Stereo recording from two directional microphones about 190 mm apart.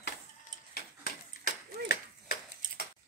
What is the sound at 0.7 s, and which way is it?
Ping, 55° left (ahead or behind).